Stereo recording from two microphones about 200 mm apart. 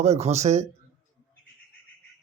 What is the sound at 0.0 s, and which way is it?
Speech, 35° right (ahead or behind).